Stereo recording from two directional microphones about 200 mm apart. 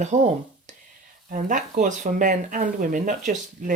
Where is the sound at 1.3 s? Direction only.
40° right (ahead or behind).